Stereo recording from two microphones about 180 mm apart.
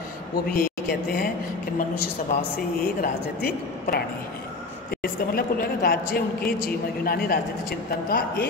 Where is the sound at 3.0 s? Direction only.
55° left (ahead or behind).